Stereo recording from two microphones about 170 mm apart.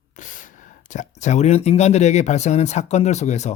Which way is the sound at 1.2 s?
45° left (ahead or behind).